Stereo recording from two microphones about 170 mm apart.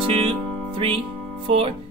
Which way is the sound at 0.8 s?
35° right (ahead or behind).